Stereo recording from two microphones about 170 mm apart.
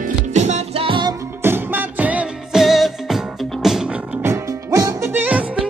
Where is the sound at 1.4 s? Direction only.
10° right (ahead or behind).